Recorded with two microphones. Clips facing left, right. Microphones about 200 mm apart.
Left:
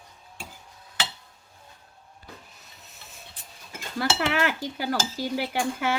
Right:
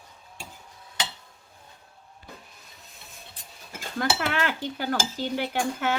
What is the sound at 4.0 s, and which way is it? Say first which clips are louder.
Cutlery: left 1 dB; 10° left (ahead or behind).